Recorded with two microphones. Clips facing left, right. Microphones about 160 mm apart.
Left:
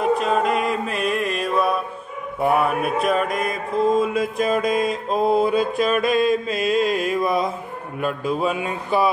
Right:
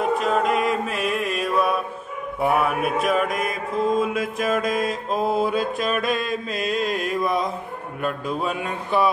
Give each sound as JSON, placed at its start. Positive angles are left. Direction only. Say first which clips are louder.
{"t": 0.2, "sound": "music", "louder": "left 1 dB", "side_deg": 0}
{"t": 2.4, "sound": "mantra", "louder": "left 2 dB", "side_deg": 0}